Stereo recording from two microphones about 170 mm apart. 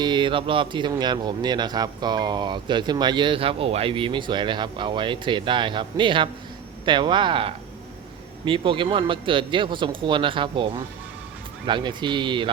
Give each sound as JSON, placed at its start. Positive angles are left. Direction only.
{"t": 0.0, "sound": "speech", "side_deg": -25}